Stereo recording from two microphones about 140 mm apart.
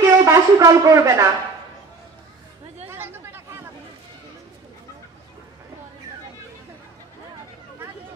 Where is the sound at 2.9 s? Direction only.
15° right (ahead or behind).